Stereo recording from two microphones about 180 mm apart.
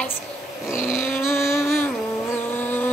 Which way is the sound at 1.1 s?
15° left (ahead or behind).